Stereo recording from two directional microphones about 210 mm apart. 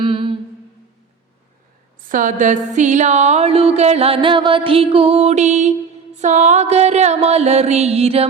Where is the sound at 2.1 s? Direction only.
40° right (ahead or behind).